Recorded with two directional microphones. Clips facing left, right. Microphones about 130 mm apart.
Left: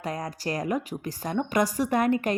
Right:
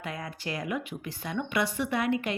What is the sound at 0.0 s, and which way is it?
Speech, 40° left (ahead or behind).